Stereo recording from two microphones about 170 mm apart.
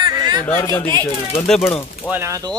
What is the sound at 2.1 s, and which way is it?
Speech, 15° right (ahead or behind).